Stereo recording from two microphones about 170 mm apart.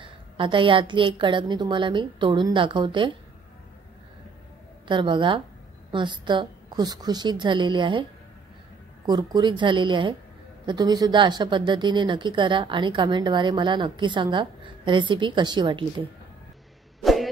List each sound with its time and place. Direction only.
0.0 s speech: 30° right (ahead or behind)
4.8 s speech: 30° right (ahead or behind)
9.0 s speech: 25° right (ahead or behind)
17.0 s cough: centre (ahead or behind)